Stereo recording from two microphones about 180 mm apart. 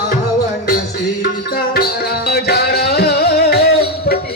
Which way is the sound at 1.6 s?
60° left (ahead or behind).